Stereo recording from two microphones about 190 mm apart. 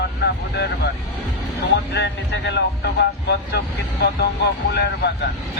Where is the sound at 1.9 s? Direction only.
65° left (ahead or behind).